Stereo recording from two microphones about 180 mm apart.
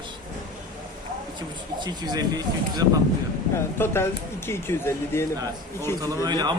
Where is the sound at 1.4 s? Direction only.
25° right (ahead or behind).